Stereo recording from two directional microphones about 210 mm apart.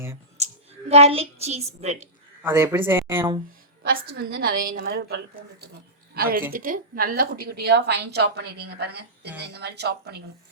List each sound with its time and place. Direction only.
0.3 s a child's voice: 30° right (ahead or behind)
2.4 s speech: 10° right (ahead or behind)
4.1 s a woman's voice: 50° right (ahead or behind)